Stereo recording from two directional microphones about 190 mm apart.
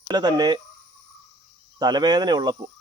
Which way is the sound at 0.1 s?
20° right (ahead or behind).